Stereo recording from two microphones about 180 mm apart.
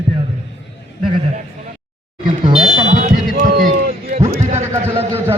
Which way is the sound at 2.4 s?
35° right (ahead or behind).